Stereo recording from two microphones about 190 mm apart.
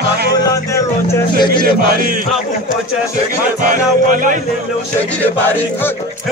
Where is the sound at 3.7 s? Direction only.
45° right (ahead or behind).